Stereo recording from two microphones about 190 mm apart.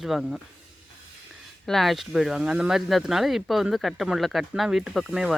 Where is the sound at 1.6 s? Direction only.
Centre (ahead or behind).